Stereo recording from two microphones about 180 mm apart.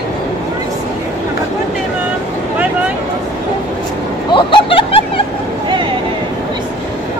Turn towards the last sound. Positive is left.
turn(degrees=30)  # may be behind; listen again after turning